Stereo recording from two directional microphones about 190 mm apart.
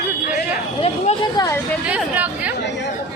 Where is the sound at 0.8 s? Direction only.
25° left (ahead or behind).